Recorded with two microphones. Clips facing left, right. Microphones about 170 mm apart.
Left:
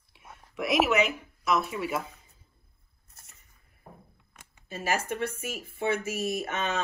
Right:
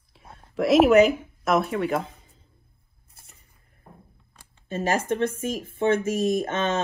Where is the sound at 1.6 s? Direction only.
60° right (ahead or behind).